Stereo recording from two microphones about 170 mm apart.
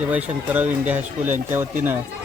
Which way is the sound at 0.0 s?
10° right (ahead or behind).